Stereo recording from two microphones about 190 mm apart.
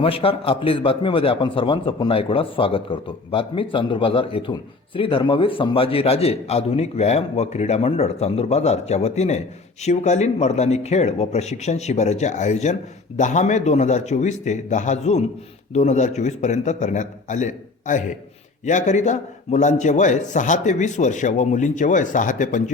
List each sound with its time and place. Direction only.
0.0 s a man's voice: 30° left (ahead or behind)